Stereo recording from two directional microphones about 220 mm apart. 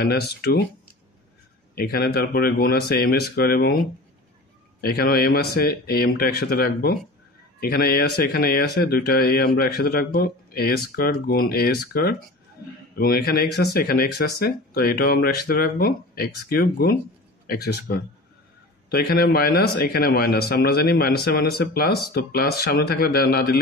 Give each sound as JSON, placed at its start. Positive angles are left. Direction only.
{"t": 0.0, "sound": "speech", "side_deg": 45}
{"t": 1.8, "sound": "speech", "side_deg": 45}
{"t": 4.8, "sound": "speech", "side_deg": 45}